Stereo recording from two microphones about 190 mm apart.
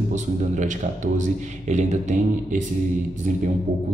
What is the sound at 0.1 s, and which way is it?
A man's voice, 40° right (ahead or behind).